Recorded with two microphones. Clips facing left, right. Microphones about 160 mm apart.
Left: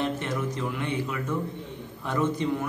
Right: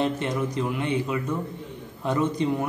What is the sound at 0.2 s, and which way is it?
A man's voice, 20° right (ahead or behind).